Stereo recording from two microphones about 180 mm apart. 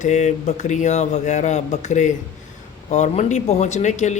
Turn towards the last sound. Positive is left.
turn(degrees=40)  # may be behind; listen again after turning